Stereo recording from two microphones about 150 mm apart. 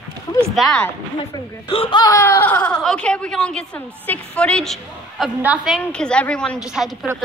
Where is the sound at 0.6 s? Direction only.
5° left (ahead or behind).